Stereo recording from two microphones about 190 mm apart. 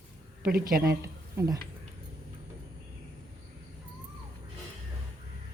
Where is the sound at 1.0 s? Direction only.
15° right (ahead or behind).